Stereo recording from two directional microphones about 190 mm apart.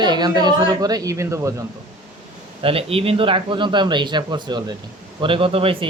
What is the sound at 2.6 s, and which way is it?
Speech, 30° right (ahead or behind).